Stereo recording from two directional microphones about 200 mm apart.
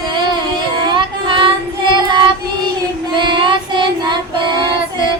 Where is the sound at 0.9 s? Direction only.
25° right (ahead or behind).